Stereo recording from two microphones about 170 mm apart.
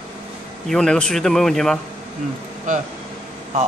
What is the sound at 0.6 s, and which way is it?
A man's voice, 5° left (ahead or behind).